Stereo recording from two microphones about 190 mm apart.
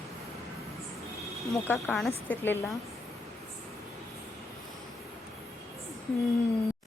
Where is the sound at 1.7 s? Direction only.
5° left (ahead or behind).